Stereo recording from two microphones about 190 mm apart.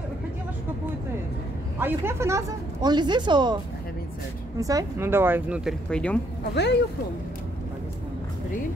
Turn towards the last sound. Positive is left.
turn(degrees=65)  # may be behind; listen again after turning